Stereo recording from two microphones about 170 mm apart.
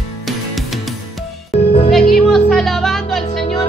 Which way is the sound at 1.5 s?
35° left (ahead or behind).